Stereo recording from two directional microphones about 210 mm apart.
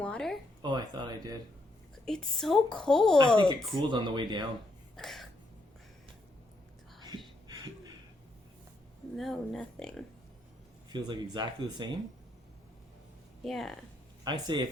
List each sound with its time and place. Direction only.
0.0 s a sound: 5° left (ahead or behind)
0.6 s speech: 20° right (ahead or behind)
2.0 s a woman's voice: centre (ahead or behind)
3.8 s speech: 20° right (ahead or behind)
4.9 s a sound: centre (ahead or behind)
7.4 s a sound: 20° right (ahead or behind)
9.1 s a woman's voice: centre (ahead or behind)
10.9 s speech: 20° right (ahead or behind)
13.4 s a woman's voice: centre (ahead or behind)
14.3 s speech: 20° right (ahead or behind)